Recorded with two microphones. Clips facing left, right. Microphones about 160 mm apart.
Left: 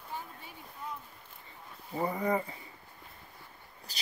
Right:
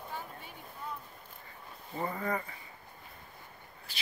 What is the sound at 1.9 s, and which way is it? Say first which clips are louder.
Speech: left 4 dB; 20° left (ahead or behind).